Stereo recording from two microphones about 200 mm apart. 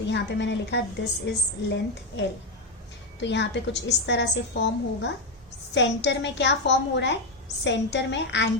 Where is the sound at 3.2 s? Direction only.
60° left (ahead or behind).